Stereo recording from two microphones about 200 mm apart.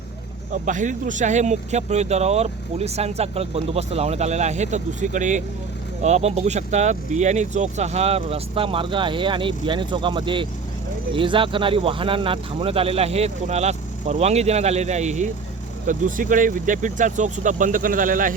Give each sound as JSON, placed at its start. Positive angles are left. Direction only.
{"t": 0.5, "sound": "speech", "side_deg": -40}